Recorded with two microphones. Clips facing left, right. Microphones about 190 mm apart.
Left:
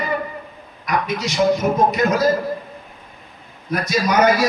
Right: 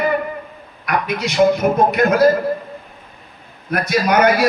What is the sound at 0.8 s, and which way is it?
A man's voice, 60° right (ahead or behind).